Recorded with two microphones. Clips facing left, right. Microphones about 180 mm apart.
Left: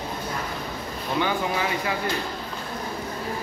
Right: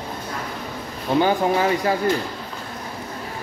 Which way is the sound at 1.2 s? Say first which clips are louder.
Right 7 dB; 40° right (ahead or behind).